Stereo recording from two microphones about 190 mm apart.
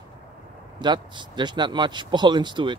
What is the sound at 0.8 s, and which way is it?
Speech, 25° right (ahead or behind).